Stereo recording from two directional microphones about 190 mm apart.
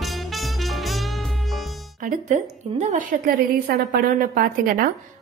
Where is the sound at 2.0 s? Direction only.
40° right (ahead or behind).